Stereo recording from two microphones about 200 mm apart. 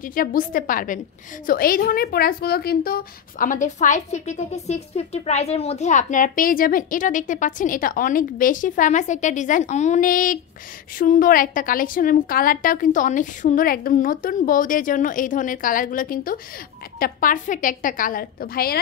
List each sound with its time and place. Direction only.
0.0 s a woman's voice: 45° left (ahead or behind)